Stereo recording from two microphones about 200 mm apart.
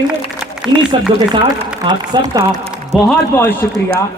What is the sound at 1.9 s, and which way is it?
Speech, 20° right (ahead or behind).